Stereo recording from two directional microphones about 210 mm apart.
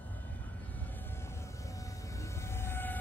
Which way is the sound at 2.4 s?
10° left (ahead or behind).